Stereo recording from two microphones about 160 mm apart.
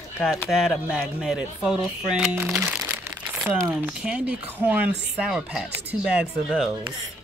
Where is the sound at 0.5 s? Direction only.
5° right (ahead or behind).